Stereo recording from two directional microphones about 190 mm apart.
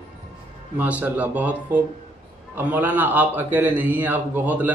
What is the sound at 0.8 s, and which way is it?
A man's voice, 10° right (ahead or behind).